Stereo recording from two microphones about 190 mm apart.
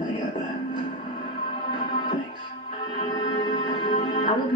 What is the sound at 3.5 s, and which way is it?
Music, 25° left (ahead or behind).